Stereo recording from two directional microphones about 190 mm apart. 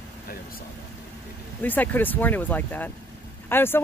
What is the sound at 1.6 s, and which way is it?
Speech, 10° left (ahead or behind).